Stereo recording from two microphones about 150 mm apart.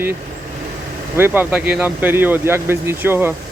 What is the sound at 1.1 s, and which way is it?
Speech, 15° right (ahead or behind).